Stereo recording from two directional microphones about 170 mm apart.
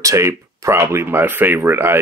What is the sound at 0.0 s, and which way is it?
Speech, 15° right (ahead or behind).